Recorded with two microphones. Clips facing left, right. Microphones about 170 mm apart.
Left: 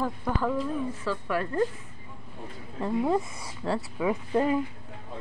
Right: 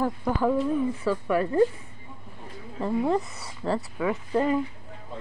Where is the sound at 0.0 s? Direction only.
10° right (ahead or behind).